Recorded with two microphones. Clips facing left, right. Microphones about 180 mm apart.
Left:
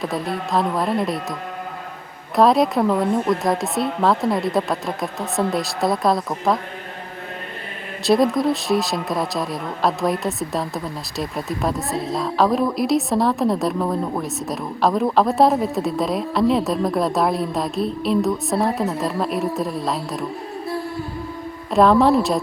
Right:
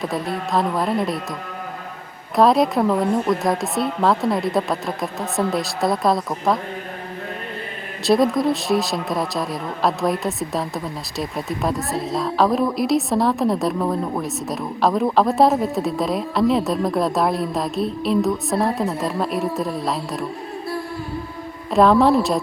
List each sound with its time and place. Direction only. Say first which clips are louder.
0.0 s speech: even; centre (ahead or behind)
2.3 s speech: even; centre (ahead or behind)
8.0 s speech: even; centre (ahead or behind)
21.7 s speech: even; centre (ahead or behind)